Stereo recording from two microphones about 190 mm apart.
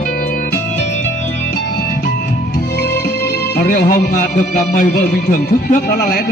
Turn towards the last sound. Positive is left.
turn(degrees=50)  # may be behind; listen again after turning